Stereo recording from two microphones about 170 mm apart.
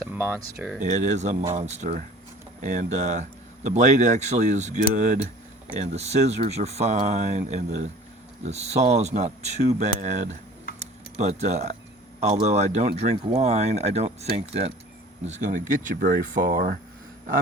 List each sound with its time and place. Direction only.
0.1 s speech: 10° right (ahead or behind)
0.8 s speech: 45° right (ahead or behind)